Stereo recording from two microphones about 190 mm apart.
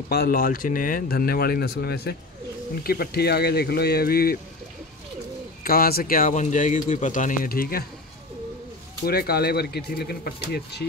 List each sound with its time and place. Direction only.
0.1 s a man's voice: 50° left (ahead or behind)
5.6 s a man's voice: 50° left (ahead or behind)
9.0 s speech: 55° left (ahead or behind)